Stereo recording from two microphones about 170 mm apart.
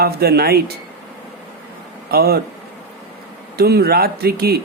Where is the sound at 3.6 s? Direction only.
65° right (ahead or behind).